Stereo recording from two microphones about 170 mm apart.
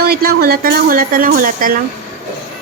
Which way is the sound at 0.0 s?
65° right (ahead or behind).